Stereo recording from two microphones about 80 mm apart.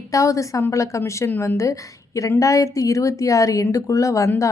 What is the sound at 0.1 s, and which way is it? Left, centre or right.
Speech, left.